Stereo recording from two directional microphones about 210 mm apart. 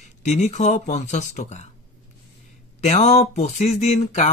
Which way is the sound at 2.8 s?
30° left (ahead or behind).